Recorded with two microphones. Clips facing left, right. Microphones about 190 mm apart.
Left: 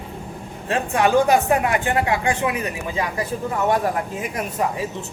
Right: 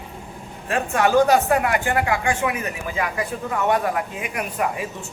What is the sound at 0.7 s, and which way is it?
A woman's voice, 20° left (ahead or behind).